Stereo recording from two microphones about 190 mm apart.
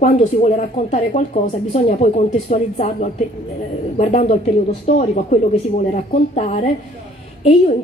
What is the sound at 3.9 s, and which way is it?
Speech, 35° left (ahead or behind).